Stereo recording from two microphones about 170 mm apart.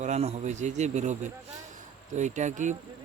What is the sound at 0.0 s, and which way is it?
Speech, 40° right (ahead or behind).